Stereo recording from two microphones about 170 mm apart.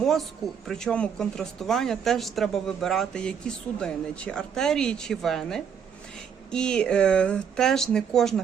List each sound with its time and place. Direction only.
0.0 s speech: centre (ahead or behind)